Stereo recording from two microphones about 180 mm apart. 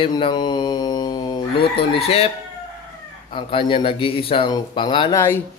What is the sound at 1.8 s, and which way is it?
Speech, 35° left (ahead or behind).